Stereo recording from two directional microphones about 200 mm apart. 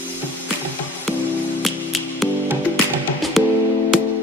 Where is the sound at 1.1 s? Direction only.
Centre (ahead or behind).